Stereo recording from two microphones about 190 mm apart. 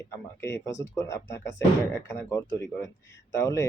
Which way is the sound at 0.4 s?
15° left (ahead or behind).